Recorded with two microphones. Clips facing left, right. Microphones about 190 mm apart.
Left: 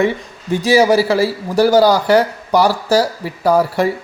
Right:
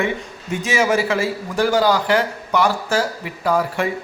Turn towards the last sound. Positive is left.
turn(degrees=40)  # may be behind; listen again after turning